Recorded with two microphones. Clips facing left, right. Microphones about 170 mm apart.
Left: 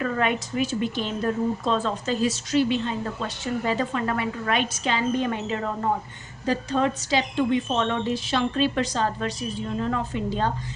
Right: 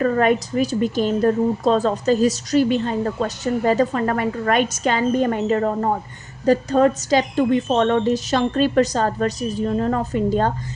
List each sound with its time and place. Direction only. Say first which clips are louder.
0.0 s speech: right 7 dB; 40° right (ahead or behind)